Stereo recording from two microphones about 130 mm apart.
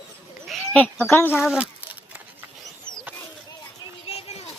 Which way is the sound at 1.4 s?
5° right (ahead or behind).